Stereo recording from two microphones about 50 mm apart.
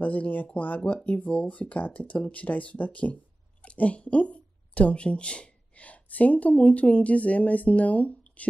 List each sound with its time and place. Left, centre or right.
0.0 s speech: left